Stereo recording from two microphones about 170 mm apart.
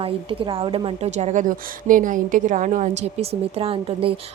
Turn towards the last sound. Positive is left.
turn(degrees=-35)  # may be behind; listen again after turning